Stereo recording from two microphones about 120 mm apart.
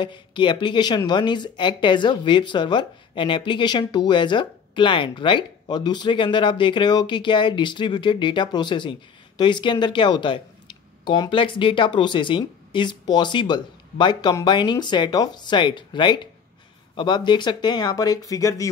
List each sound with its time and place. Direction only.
0.0 s speech: 40° left (ahead or behind)